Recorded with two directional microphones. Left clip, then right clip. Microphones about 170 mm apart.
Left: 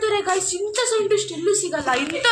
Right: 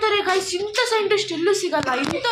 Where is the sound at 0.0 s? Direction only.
5° right (ahead or behind).